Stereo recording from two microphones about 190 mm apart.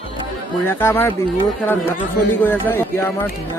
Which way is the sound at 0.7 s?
10° left (ahead or behind).